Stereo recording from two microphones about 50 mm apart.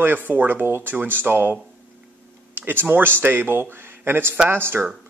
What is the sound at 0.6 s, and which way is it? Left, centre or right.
Speech, right.